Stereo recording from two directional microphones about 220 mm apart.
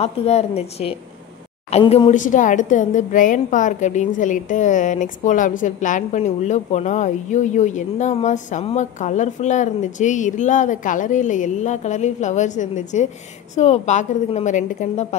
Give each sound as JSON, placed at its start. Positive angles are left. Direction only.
{"t": 0.0, "sound": "a woman's voice", "side_deg": 30}